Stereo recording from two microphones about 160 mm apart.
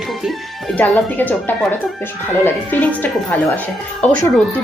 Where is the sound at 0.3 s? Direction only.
5° left (ahead or behind).